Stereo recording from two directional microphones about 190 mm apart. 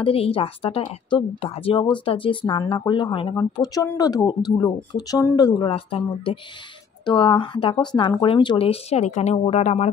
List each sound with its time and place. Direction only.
0.0 s a woman's voice: 30° left (ahead or behind)